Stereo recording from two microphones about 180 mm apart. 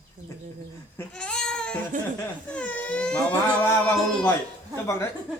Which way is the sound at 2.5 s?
5° left (ahead or behind).